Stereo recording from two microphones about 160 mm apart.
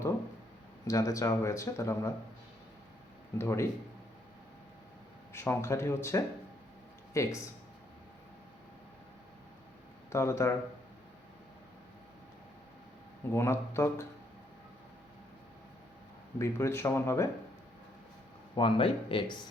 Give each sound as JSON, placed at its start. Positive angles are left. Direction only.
{"t": 0.9, "sound": "speech", "side_deg": 20}
{"t": 3.3, "sound": "speech", "side_deg": 15}
{"t": 5.3, "sound": "speech", "side_deg": 15}
{"t": 10.1, "sound": "speech", "side_deg": 15}
{"t": 13.3, "sound": "speech", "side_deg": 15}
{"t": 16.4, "sound": "speech", "side_deg": 15}
{"t": 18.5, "sound": "speech", "side_deg": 30}